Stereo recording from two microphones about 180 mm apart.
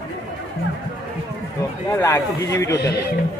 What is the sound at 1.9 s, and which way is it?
Speech, 15° left (ahead or behind).